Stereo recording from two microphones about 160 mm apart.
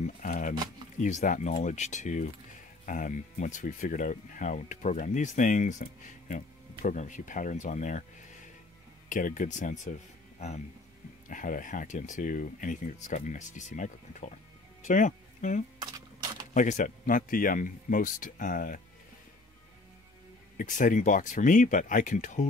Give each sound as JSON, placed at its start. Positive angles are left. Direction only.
{"t": 0.0, "sound": "a sound", "side_deg": 50}
{"t": 0.9, "sound": "speech", "side_deg": 50}
{"t": 9.1, "sound": "speech", "side_deg": 55}
{"t": 11.2, "sound": "speech", "side_deg": 55}
{"t": 15.8, "sound": "a sound", "side_deg": -25}
{"t": 16.5, "sound": "speech", "side_deg": 55}
{"t": 20.5, "sound": "speech", "side_deg": 55}